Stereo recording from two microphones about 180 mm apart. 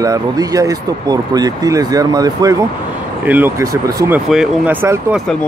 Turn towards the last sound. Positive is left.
turn(degrees=-15)  # may be behind; listen again after turning